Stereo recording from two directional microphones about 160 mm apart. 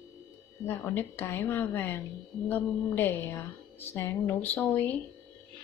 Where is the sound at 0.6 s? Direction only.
15° left (ahead or behind).